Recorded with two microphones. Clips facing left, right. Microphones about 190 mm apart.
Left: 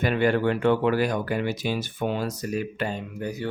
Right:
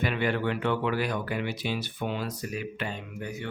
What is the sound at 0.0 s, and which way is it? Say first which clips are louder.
Speech: left 6 dB; 45° left (ahead or behind).